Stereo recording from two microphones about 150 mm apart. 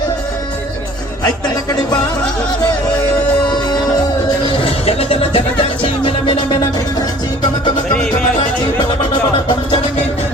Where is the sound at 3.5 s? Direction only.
30° left (ahead or behind).